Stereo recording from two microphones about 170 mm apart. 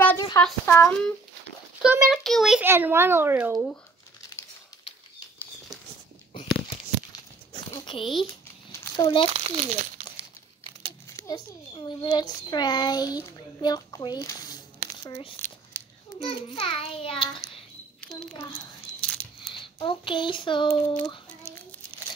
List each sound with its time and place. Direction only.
0.4 s speech: 10° left (ahead or behind)
1.8 s a child's voice: centre (ahead or behind)
2.7 s a child's voice: 15° right (ahead or behind)
3.5 s a child's voice: centre (ahead or behind)
7.7 s a sound: 30° left (ahead or behind)
8.9 s a child's voice: 30° left (ahead or behind)
9.3 s a child's voice: 30° right (ahead or behind)
11.1 s a child's voice: 20° left (ahead or behind)
15.3 s a sound: 10° left (ahead or behind)
16.2 s a child's voice: 35° left (ahead or behind)
18.9 s a sound: 5° left (ahead or behind)
19.6 s a child's voice: 30° left (ahead or behind)
21.4 s child singing: 15° left (ahead or behind)